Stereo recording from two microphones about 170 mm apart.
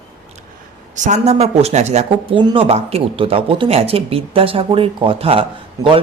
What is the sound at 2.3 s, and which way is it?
A man's voice, 30° right (ahead or behind).